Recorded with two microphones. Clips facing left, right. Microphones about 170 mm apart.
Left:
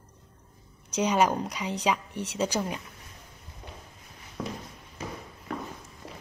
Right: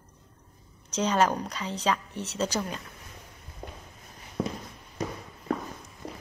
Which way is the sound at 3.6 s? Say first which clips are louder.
Right 4 dB; 50° right (ahead or behind).